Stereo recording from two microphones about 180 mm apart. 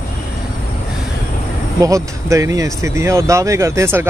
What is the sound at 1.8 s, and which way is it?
Speech, 15° right (ahead or behind).